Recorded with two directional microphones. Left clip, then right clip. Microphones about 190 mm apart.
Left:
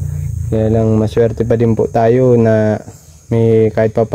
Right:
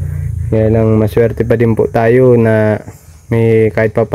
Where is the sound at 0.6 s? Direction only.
20° right (ahead or behind).